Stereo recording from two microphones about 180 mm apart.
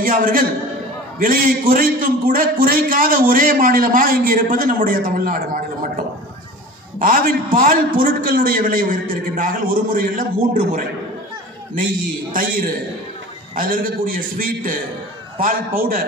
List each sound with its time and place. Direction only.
0.0 s a man's voice: 50° right (ahead or behind)
12.3 s a man's voice: 50° right (ahead or behind)